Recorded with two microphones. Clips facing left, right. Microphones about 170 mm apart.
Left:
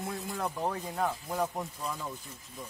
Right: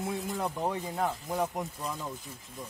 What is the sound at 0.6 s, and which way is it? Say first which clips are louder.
Speech: even; 5° right (ahead or behind).